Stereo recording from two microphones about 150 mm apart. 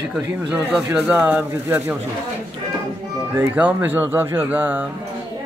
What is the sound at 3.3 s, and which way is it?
Speech, 10° right (ahead or behind).